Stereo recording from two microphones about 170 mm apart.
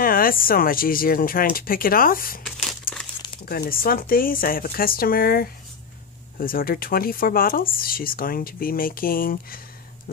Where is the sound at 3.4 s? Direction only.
60° left (ahead or behind).